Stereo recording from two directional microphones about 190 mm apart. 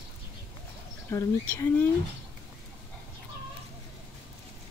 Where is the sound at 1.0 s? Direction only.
15° left (ahead or behind).